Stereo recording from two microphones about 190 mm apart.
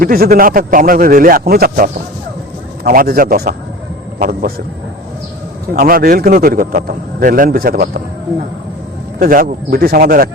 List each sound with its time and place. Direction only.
0.0 s speech: 50° right (ahead or behind)
5.7 s speech: 50° right (ahead or behind)
9.1 s speech: 50° right (ahead or behind)